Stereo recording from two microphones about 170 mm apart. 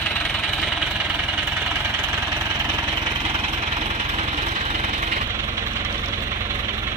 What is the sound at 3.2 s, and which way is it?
Jackhammer, 35° right (ahead or behind).